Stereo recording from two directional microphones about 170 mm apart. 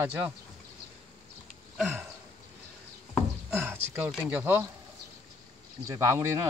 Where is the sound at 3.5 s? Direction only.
10° right (ahead or behind).